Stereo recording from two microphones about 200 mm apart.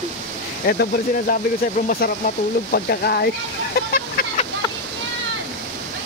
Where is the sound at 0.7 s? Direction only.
50° left (ahead or behind).